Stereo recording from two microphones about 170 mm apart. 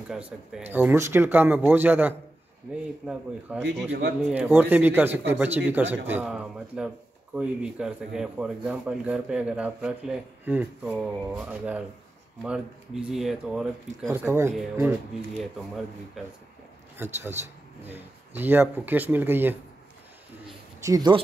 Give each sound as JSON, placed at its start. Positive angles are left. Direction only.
{"t": 0.1, "sound": "a man's voice", "side_deg": -5}
{"t": 3.6, "sound": "a man's voice", "side_deg": -90}
{"t": 4.2, "sound": "a man's voice", "side_deg": -10}
{"t": 16.2, "sound": "speech", "side_deg": 0}
{"t": 16.9, "sound": "a man's voice", "side_deg": -10}
{"t": 20.8, "sound": "speech", "side_deg": -25}